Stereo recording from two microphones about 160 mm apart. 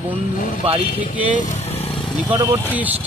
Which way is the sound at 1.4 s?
45° left (ahead or behind).